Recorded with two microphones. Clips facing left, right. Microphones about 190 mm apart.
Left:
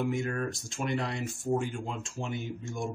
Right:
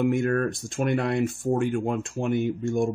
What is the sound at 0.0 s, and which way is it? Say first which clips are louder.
Speech: right 8 dB; 60° right (ahead or behind).